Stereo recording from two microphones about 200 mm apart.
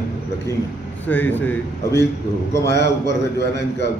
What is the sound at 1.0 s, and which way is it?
A man's voice, 10° left (ahead or behind).